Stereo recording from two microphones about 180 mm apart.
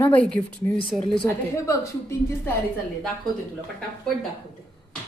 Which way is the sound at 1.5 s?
15° left (ahead or behind).